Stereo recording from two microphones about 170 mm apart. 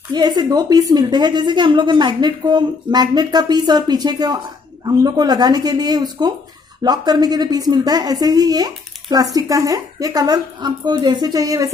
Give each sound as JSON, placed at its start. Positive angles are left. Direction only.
{"t": 0.1, "sound": "a woman's voice", "side_deg": -25}